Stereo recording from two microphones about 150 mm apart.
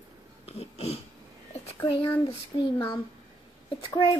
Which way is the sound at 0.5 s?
45° left (ahead or behind).